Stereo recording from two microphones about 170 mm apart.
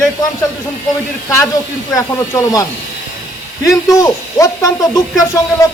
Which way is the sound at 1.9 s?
20° left (ahead or behind).